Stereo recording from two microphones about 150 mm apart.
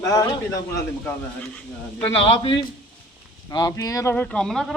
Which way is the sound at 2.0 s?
35° left (ahead or behind).